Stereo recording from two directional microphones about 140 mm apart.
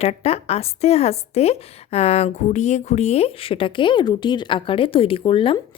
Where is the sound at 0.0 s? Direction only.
50° left (ahead or behind).